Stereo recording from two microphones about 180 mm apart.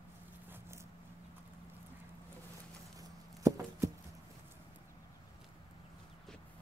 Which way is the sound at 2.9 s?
20° right (ahead or behind).